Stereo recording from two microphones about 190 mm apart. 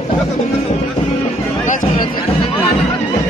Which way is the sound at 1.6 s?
40° left (ahead or behind).